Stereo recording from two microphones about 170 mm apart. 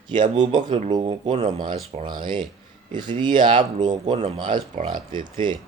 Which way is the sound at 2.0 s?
25° right (ahead or behind).